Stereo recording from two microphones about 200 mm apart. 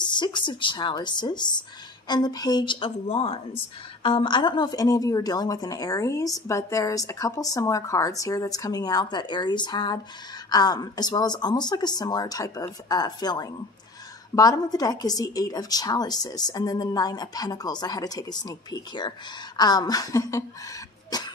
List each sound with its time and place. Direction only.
0.0 s a woman's voice: 20° left (ahead or behind)
21.1 s cough: 20° left (ahead or behind)